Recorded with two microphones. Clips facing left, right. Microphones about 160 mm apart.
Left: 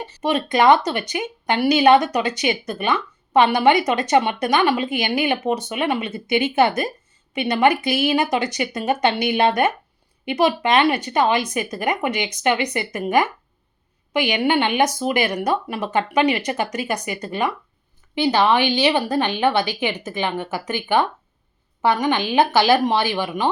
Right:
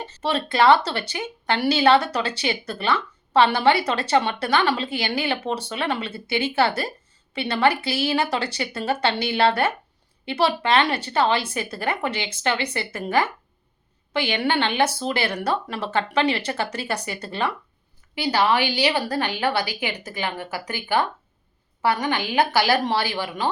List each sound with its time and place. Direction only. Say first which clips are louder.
0.0 s a woman's voice: left 3 dB; 15° left (ahead or behind)